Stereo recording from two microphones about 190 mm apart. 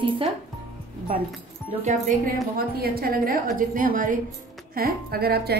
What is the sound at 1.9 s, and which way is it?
Speech, 40° right (ahead or behind).